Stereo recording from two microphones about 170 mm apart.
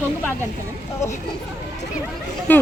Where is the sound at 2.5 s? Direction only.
10° left (ahead or behind).